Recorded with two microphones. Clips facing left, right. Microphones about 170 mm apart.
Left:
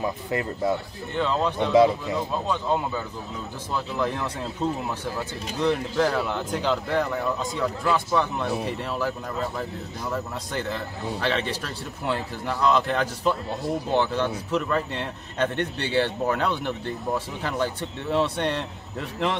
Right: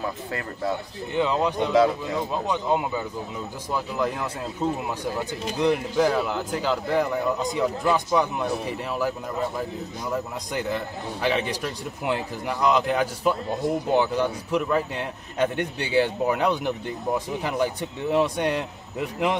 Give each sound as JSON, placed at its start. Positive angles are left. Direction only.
{"t": 0.0, "sound": "a man's voice", "side_deg": 20}
{"t": 1.1, "sound": "a man's voice", "side_deg": -15}